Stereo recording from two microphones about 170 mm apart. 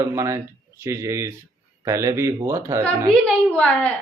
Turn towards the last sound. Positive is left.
turn(degrees=10)  # may be behind; listen again after turning